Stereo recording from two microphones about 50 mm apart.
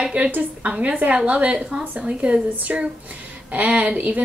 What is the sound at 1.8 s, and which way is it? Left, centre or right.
A woman's voice, right.